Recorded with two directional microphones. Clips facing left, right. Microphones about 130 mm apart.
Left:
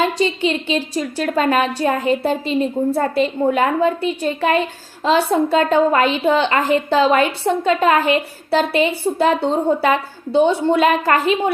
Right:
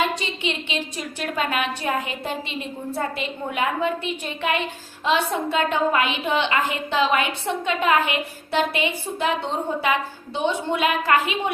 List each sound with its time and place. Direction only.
0.2 s a woman's voice: 35° left (ahead or behind)